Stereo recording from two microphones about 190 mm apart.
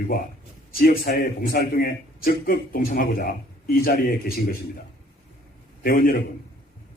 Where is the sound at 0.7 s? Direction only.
50° left (ahead or behind).